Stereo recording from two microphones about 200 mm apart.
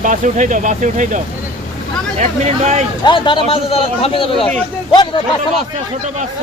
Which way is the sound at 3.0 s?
25° left (ahead or behind).